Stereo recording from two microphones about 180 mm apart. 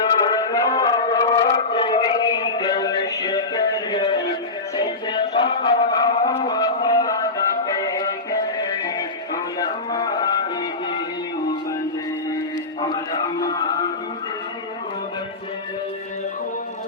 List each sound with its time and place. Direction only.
0.3 s music: 20° left (ahead or behind)
4.8 s a sound: 25° left (ahead or behind)
7.8 s music: 20° left (ahead or behind)
12.8 s music: 25° left (ahead or behind)